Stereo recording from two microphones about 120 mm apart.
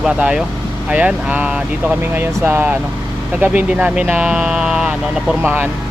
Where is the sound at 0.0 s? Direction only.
5° right (ahead or behind).